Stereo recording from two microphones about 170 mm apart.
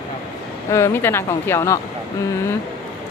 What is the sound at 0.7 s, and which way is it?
Speech, 15° left (ahead or behind).